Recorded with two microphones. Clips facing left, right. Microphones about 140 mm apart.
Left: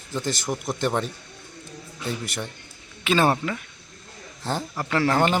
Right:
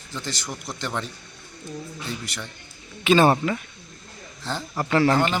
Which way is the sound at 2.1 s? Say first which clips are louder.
Left 7 dB; 50° left (ahead or behind).